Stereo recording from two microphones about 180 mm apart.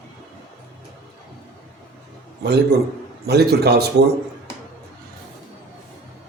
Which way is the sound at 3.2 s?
65° right (ahead or behind).